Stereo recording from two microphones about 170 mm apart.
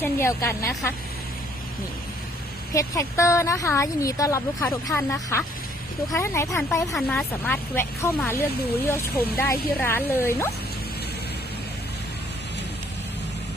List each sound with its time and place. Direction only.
0.0 s speech: 15° left (ahead or behind)
2.7 s speech: 20° left (ahead or behind)